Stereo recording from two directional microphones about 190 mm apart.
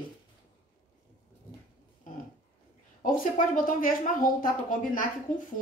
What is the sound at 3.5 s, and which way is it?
A woman's voice, 45° left (ahead or behind).